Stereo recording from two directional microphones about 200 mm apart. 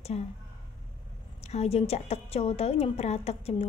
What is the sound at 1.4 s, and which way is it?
A woman's voice, 30° left (ahead or behind).